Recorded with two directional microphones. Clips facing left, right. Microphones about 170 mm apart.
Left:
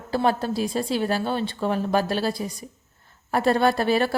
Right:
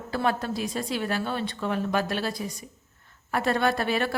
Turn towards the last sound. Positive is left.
turn(degrees=35)  # may be behind; listen again after turning